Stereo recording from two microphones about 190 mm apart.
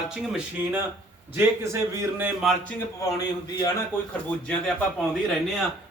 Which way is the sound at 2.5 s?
Centre (ahead or behind).